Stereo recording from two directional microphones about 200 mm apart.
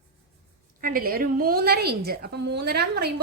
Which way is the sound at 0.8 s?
45° right (ahead or behind).